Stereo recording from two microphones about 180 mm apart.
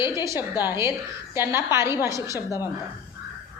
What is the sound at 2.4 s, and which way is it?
Speech, 20° left (ahead or behind).